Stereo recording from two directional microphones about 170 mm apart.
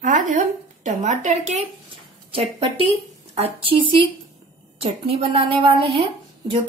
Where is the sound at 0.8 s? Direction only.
45° right (ahead or behind).